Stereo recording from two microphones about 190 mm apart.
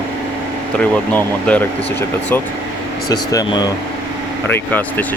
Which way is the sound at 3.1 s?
20° left (ahead or behind).